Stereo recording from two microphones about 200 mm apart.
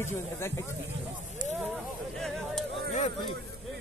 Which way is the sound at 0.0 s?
10° left (ahead or behind).